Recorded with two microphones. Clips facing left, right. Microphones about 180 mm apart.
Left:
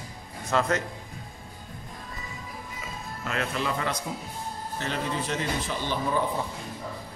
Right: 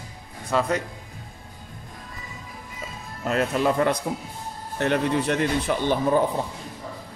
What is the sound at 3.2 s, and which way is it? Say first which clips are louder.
Speech: right 8 dB; 40° right (ahead or behind).